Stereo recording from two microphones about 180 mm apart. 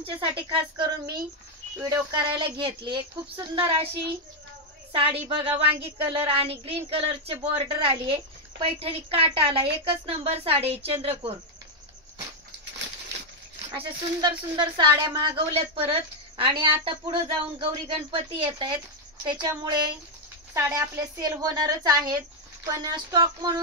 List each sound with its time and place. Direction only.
0.0 s speech: 25° right (ahead or behind)
4.9 s a woman's voice: 30° right (ahead or behind)
13.7 s speech: 25° right (ahead or behind)